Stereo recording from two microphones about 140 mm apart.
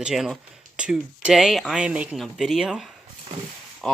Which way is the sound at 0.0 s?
Centre (ahead or behind).